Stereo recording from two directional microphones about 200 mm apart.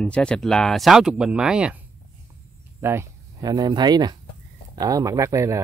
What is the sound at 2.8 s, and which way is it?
Speech, 10° right (ahead or behind).